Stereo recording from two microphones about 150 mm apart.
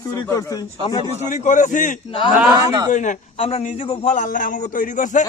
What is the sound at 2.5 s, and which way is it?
Speech, 25° right (ahead or behind).